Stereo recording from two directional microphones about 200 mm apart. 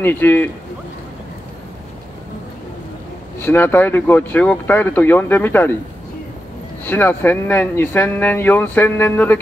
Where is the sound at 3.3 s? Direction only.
10° left (ahead or behind).